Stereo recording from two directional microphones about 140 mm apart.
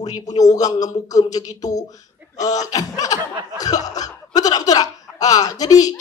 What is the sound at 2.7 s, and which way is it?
Speech, 25° left (ahead or behind).